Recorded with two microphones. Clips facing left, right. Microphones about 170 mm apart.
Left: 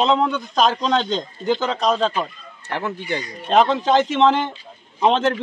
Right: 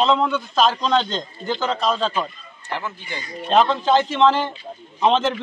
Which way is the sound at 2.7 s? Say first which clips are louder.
Left 4 dB; 65° left (ahead or behind).